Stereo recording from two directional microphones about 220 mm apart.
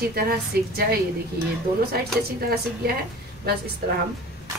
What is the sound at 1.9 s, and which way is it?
A woman's voice, 45° right (ahead or behind).